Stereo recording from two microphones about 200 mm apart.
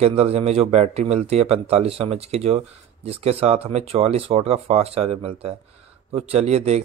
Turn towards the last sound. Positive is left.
turn(degrees=-30)  # may be behind; listen again after turning